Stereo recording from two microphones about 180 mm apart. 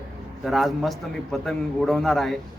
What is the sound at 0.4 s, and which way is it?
A man's voice, centre (ahead or behind).